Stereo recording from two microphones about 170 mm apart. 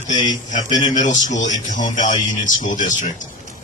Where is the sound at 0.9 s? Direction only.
45° left (ahead or behind).